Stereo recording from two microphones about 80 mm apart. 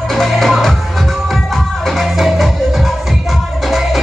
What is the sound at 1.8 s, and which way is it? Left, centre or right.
Music, centre.